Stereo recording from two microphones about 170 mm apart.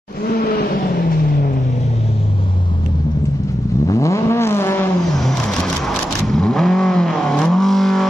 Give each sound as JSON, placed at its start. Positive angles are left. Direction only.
{"t": 0.3, "sound": "vehicle", "side_deg": 65}
{"t": 3.8, "sound": "vehicle", "side_deg": 20}
{"t": 5.1, "sound": "vehicle", "side_deg": 5}